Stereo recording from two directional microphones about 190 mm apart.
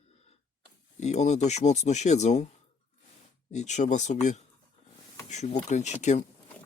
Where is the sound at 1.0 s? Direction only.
35° left (ahead or behind).